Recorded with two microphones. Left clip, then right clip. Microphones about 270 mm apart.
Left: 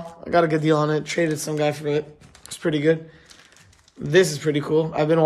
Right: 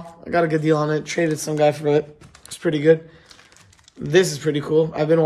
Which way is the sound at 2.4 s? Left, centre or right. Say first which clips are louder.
Right 2 dB; centre.